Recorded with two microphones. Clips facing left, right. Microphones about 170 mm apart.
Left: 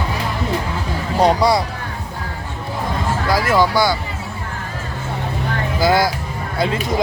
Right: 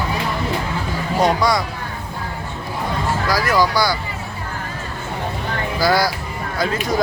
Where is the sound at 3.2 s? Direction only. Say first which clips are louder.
Left 2 dB; 25° left (ahead or behind).